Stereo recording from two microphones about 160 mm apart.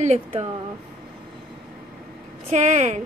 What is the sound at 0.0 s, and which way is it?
Speech, 45° right (ahead or behind).